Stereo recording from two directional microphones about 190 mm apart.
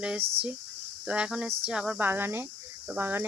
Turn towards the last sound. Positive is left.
turn(degrees=-10)  # may be behind; listen again after turning